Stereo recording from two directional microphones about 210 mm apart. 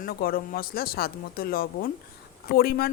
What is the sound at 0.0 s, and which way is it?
Speech, 45° left (ahead or behind).